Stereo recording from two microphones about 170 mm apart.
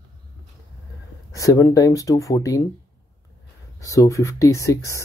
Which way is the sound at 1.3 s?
20° left (ahead or behind).